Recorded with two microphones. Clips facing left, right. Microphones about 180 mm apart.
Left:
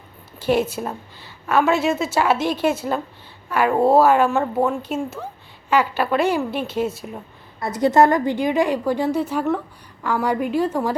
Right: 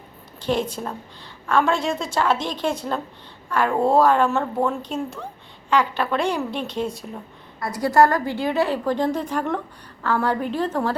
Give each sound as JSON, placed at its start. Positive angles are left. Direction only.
{"t": 0.3, "sound": "a woman's voice", "side_deg": 5}
{"t": 7.6, "sound": "a woman's voice", "side_deg": 20}